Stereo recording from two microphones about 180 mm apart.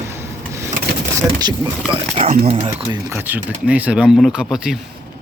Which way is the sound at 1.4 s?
25° right (ahead or behind).